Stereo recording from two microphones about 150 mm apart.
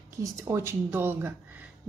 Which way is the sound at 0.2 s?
20° right (ahead or behind).